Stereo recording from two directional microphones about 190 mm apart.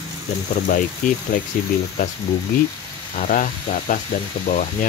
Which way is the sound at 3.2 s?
45° left (ahead or behind).